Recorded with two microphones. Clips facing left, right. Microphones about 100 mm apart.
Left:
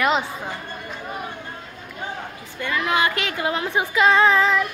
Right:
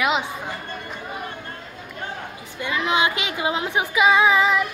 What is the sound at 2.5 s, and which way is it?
A child's voice, 15° right (ahead or behind).